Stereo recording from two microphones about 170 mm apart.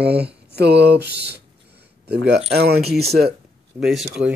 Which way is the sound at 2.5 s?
70° right (ahead or behind).